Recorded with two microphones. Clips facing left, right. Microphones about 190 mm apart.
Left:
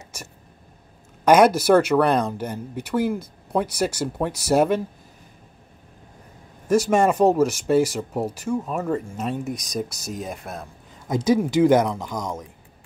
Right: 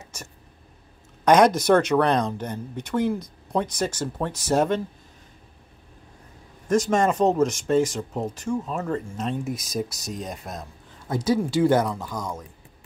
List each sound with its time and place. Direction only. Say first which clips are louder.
1.2 s speech: left 2 dB; 5° left (ahead or behind)
6.7 s speech: left 2 dB; 10° left (ahead or behind)
11.1 s speech: left 3 dB; 20° left (ahead or behind)